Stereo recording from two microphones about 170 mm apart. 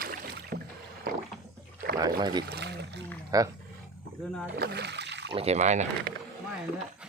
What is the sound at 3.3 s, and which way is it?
Speech, 20° right (ahead or behind).